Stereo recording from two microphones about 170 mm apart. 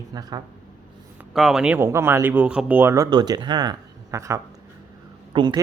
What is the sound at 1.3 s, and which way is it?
A man's voice, centre (ahead or behind).